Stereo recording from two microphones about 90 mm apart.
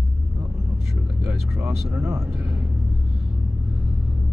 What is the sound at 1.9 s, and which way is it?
Speech, 30° right (ahead or behind).